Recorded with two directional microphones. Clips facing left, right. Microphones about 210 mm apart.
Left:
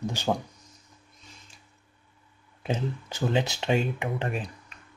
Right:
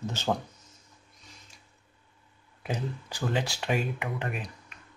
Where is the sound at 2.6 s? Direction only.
25° left (ahead or behind).